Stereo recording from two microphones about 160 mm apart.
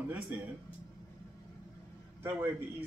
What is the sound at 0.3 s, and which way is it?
Speech, 10° right (ahead or behind).